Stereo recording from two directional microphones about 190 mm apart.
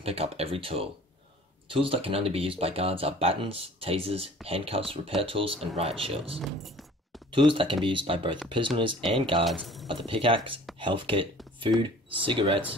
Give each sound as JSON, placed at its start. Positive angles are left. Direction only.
{"t": 0.0, "sound": "speech", "side_deg": -30}
{"t": 9.4, "sound": "speech", "side_deg": 0}
{"t": 9.8, "sound": "speech", "side_deg": -25}
{"t": 12.3, "sound": "speech", "side_deg": -25}